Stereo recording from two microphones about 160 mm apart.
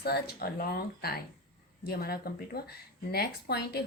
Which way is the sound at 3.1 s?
85° left.